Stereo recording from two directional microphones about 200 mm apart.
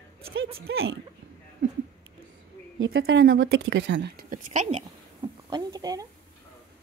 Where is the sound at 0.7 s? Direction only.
90° right.